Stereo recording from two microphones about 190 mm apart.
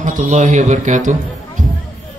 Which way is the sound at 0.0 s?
40° right (ahead or behind).